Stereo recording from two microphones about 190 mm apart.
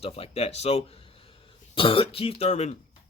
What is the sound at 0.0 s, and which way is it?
Speech, 30° left (ahead or behind).